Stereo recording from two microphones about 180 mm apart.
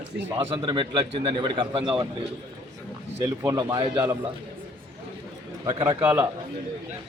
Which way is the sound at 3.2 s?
20° right (ahead or behind).